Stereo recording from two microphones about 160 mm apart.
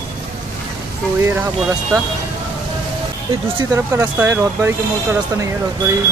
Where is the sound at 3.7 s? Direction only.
15° right (ahead or behind).